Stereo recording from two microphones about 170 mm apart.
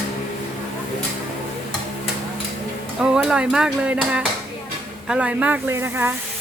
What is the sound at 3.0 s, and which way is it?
A woman's voice, 5° right (ahead or behind).